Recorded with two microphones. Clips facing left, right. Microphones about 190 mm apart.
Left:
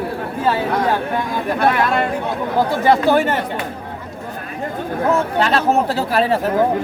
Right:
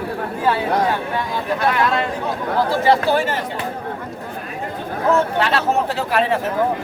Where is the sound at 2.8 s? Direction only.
50° left (ahead or behind).